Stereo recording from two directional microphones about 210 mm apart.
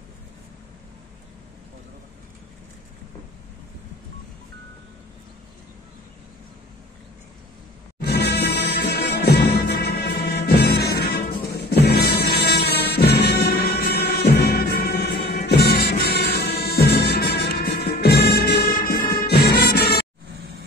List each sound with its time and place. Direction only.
8.0 s music: 50° left (ahead or behind)